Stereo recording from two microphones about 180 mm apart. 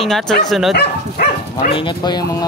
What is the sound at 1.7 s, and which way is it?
Speech, 25° left (ahead or behind).